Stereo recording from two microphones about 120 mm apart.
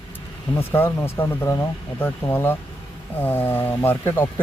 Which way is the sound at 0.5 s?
15° left (ahead or behind).